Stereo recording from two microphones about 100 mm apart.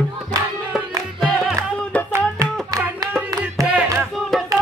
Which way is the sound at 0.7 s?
Centre (ahead or behind).